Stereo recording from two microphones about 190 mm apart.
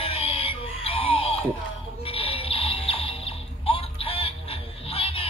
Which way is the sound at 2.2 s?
30° left (ahead or behind).